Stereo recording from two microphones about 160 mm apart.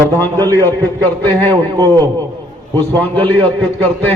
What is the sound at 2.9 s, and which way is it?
A man's voice, 10° left (ahead or behind).